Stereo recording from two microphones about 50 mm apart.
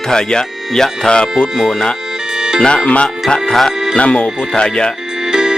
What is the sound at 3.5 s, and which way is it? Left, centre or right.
Music, centre.